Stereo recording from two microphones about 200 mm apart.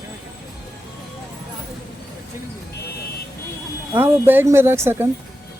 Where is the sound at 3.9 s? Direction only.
10° right (ahead or behind).